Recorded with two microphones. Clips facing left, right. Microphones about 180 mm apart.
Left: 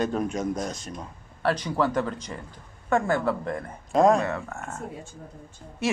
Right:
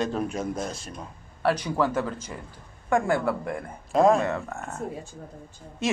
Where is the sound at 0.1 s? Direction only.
5° right (ahead or behind).